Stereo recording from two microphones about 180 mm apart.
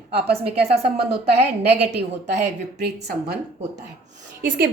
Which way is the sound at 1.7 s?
70° right (ahead or behind).